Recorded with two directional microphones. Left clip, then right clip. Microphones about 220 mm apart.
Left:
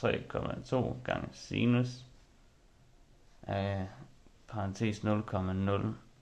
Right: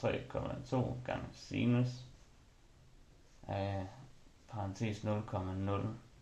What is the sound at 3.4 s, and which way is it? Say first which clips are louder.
Speech: left 4 dB; 40° left (ahead or behind).